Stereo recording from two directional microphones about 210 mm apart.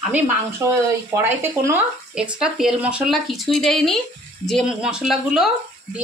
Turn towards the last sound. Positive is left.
turn(degrees=0)  # may be behind; listen again after turning